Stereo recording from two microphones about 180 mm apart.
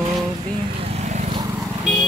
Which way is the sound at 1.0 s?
40° right (ahead or behind).